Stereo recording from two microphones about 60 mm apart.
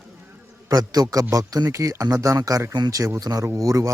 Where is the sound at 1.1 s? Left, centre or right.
Right.